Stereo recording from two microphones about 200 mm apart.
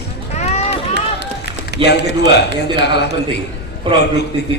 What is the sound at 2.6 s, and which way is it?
Speech, 55° left (ahead or behind).